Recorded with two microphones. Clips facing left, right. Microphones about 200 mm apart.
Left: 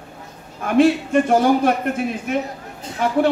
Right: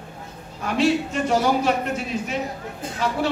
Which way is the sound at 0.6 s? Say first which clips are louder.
Left 5 dB; 55° left (ahead or behind).